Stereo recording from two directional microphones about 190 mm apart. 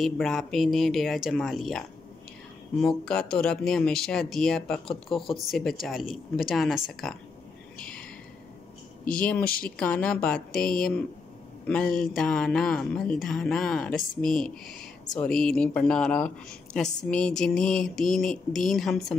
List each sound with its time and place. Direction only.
0.0 s speech: centre (ahead or behind)
9.1 s speech: 5° left (ahead or behind)
9.4 s speech: 50° left (ahead or behind)
9.8 s speech: 5° left (ahead or behind)